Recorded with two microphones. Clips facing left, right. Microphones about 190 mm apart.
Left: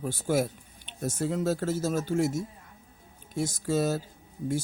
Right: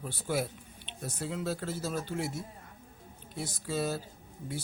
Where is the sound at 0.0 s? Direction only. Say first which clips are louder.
Left 6 dB; 45° left (ahead or behind).